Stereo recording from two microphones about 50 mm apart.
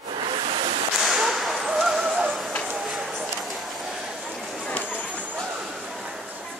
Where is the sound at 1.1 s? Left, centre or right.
Centre.